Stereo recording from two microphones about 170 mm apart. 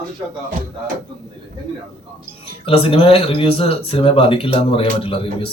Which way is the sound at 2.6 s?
35° left (ahead or behind).